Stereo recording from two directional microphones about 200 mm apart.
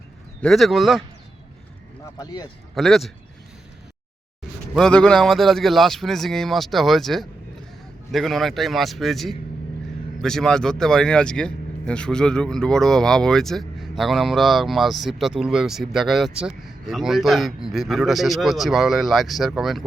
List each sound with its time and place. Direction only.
0.4 s speech: centre (ahead or behind)
2.1 s speech: 20° left (ahead or behind)
2.7 s speech: centre (ahead or behind)
4.7 s speech: 5° left (ahead or behind)